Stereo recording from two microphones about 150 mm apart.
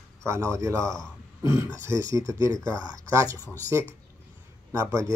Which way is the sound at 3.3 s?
15° left (ahead or behind).